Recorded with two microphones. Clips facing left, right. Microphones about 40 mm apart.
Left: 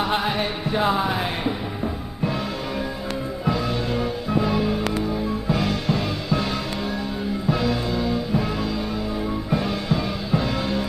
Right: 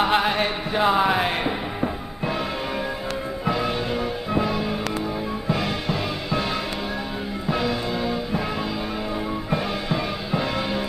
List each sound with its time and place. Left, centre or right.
0.0 s music: right
0.3 s music: centre
1.0 s music: right
3.4 s music: right
4.5 s music: centre
7.4 s music: centre
9.5 s music: centre